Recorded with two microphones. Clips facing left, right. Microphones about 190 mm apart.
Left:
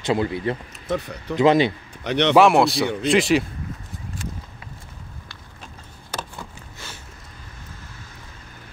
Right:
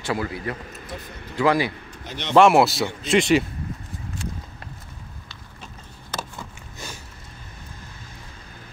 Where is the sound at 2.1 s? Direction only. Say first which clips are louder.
Left 13 dB; 70° left (ahead or behind).